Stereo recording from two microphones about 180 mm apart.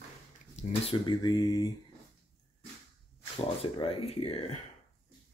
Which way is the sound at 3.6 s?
30° left (ahead or behind).